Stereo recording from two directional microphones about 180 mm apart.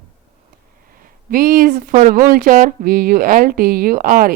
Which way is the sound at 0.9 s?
50° right (ahead or behind).